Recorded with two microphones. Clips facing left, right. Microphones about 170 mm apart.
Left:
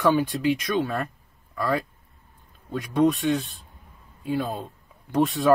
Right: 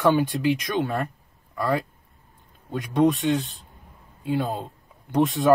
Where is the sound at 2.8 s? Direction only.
20° right (ahead or behind).